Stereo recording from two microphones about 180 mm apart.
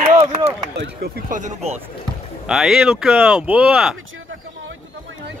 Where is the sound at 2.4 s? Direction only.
Centre (ahead or behind).